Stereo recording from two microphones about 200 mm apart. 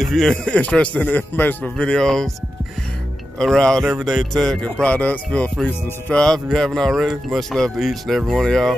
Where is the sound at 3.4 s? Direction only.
5° left (ahead or behind).